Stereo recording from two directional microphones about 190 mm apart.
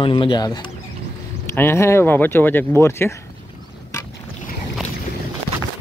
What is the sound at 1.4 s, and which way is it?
Speech, 10° left (ahead or behind).